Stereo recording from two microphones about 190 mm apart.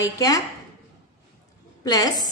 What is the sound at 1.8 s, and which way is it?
Speech, 20° left (ahead or behind).